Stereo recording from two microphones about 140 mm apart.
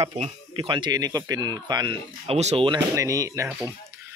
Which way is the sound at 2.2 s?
50° right (ahead or behind).